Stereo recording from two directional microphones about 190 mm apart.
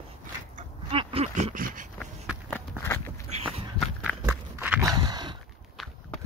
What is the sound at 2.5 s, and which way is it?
Walk, 15° left (ahead or behind).